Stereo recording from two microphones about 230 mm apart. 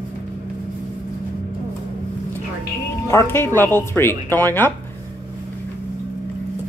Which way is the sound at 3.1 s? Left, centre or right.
Centre.